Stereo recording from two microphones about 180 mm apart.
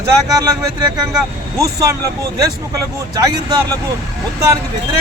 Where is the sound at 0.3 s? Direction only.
20° right (ahead or behind).